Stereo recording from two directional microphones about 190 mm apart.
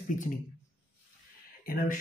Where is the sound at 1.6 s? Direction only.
50° left (ahead or behind).